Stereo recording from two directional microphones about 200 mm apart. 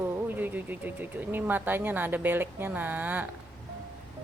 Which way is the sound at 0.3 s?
10° right (ahead or behind).